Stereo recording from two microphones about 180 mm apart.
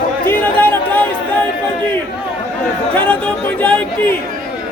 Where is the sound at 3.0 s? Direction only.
5° left (ahead or behind).